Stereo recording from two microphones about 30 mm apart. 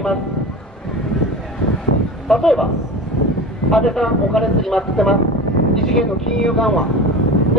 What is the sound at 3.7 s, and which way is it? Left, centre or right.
Speech, centre.